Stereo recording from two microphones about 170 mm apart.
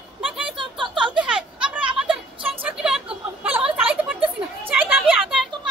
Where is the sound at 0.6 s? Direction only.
30° right (ahead or behind).